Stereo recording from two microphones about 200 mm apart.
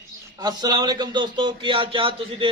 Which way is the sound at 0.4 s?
20° right (ahead or behind).